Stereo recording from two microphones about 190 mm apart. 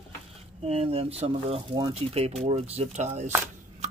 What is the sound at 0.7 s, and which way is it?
Speech, 30° right (ahead or behind).